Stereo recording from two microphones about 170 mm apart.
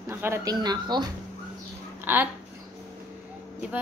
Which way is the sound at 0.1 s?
15° right (ahead or behind).